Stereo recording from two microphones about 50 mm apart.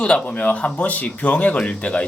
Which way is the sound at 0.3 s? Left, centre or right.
Left.